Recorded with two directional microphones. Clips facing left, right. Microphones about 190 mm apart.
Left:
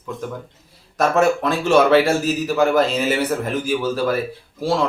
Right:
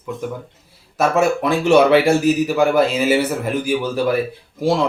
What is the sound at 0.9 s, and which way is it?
A man's voice, 10° right (ahead or behind).